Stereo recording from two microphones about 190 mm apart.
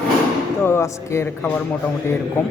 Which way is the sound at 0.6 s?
15° left (ahead or behind).